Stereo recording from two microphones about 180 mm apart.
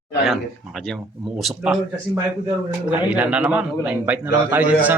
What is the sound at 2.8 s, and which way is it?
A man's voice, 10° right (ahead or behind).